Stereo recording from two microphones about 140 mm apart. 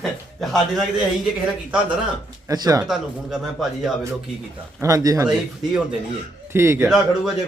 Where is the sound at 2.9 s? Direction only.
Centre (ahead or behind).